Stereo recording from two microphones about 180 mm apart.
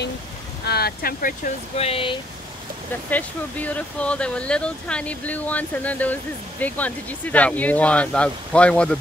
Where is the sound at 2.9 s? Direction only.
10° left (ahead or behind).